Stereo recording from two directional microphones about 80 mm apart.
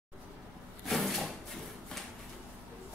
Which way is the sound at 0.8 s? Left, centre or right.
Centre.